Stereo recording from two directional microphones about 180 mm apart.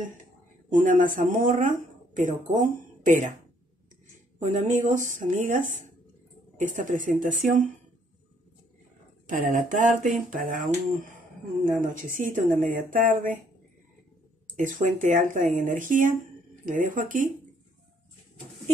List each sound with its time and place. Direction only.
0.7 s speech: 45° right (ahead or behind)
4.4 s speech: 45° right (ahead or behind)
9.3 s speech: 45° right (ahead or behind)
11.8 s speech: 45° right (ahead or behind)
14.6 s speech: 45° right (ahead or behind)